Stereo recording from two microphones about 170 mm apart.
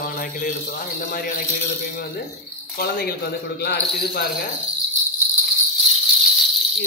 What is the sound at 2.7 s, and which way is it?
Speech, 65° left (ahead or behind).